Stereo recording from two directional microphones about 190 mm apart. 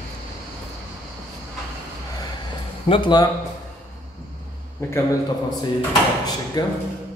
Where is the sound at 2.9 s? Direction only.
25° left (ahead or behind).